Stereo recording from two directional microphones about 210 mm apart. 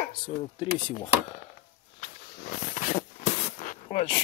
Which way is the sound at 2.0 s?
40° left (ahead or behind).